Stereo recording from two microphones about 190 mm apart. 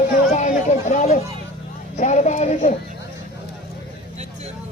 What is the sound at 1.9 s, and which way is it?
Speech, 40° left (ahead or behind).